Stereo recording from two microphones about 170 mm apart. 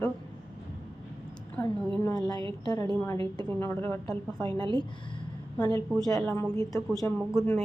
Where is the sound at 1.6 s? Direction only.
20° left (ahead or behind).